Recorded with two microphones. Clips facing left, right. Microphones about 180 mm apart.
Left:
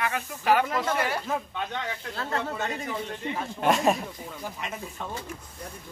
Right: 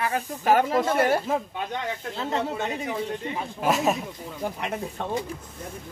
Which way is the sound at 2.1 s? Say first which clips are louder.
Right 3 dB; 20° right (ahead or behind).